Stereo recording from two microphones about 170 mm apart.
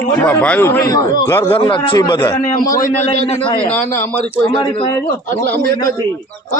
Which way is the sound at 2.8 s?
45° left (ahead or behind).